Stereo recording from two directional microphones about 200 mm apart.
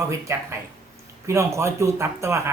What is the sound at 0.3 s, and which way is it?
Speech, 15° right (ahead or behind).